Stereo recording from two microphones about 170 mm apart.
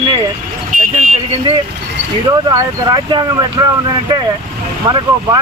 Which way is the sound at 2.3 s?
20° right (ahead or behind).